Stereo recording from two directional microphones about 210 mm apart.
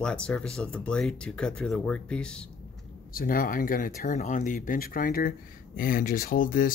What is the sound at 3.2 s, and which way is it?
Speech, 40° left (ahead or behind).